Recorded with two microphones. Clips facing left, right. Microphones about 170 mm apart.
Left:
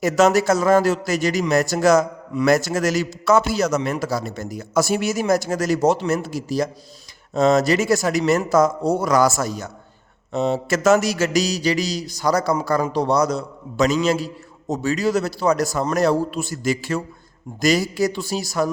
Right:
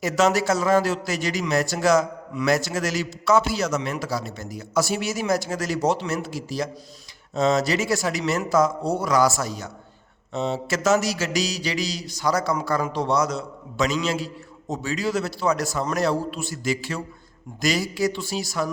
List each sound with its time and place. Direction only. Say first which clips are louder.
0.0 s a man's voice: left 4 dB; 45° left (ahead or behind)